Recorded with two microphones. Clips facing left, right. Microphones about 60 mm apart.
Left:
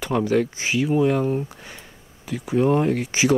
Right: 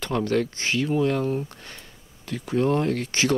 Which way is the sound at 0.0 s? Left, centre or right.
Centre.